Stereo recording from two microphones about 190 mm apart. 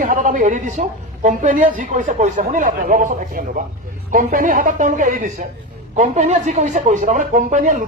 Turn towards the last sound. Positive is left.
turn(degrees=-40)  # may be behind; listen again after turning